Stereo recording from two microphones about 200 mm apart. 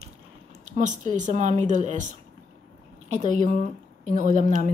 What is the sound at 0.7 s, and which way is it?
A woman's voice, 40° right (ahead or behind).